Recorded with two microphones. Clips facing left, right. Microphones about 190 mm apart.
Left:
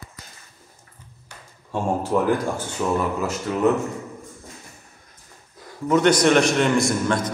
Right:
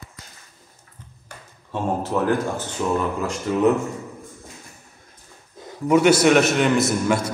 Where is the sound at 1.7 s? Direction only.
10° left (ahead or behind).